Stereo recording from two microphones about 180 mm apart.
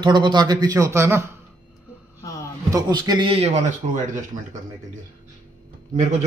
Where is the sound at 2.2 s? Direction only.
15° left (ahead or behind).